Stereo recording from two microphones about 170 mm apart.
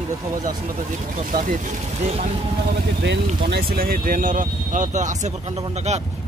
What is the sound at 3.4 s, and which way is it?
Speech, 65° right (ahead or behind).